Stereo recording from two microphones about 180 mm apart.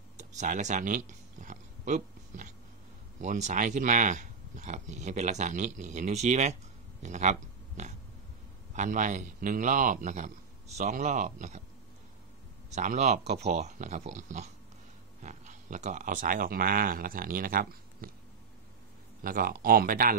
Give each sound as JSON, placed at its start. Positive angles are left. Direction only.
{"t": 0.2, "sound": "a sound", "side_deg": -40}
{"t": 3.2, "sound": "speech", "side_deg": -40}
{"t": 12.7, "sound": "speech", "side_deg": -40}
{"t": 19.2, "sound": "speech", "side_deg": -50}